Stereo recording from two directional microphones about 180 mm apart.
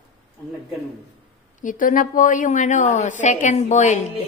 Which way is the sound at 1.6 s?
45° left (ahead or behind).